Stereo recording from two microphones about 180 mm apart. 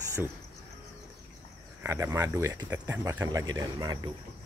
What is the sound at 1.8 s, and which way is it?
Speech, 15° right (ahead or behind).